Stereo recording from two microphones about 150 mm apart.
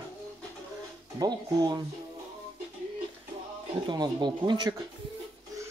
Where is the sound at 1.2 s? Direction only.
30° right (ahead or behind).